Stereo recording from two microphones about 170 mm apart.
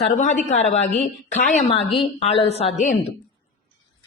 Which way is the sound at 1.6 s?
35° left (ahead or behind).